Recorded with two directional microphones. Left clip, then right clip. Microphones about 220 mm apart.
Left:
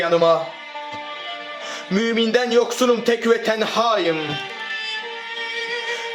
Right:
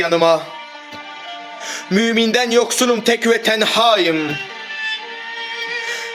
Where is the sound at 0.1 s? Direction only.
35° right (ahead or behind).